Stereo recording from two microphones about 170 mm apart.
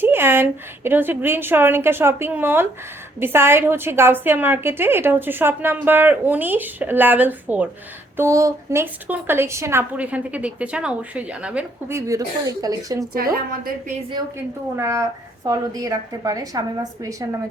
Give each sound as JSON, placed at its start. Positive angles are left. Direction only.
{"t": 0.0, "sound": "a sound", "side_deg": -15}
{"t": 0.9, "sound": "a woman's voice", "side_deg": -10}
{"t": 13.3, "sound": "a woman's voice", "side_deg": -60}
{"t": 14.8, "sound": "a woman's voice", "side_deg": -15}